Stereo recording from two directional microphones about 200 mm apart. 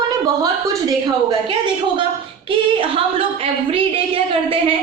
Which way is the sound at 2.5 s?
25° right (ahead or behind).